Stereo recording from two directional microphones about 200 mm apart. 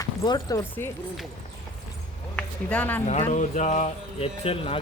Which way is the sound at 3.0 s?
35° left (ahead or behind).